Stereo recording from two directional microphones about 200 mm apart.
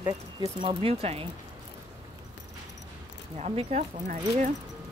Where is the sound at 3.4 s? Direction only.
35° right (ahead or behind).